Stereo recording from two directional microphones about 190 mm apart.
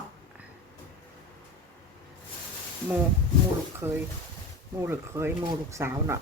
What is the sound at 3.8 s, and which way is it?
Speech, 10° right (ahead or behind).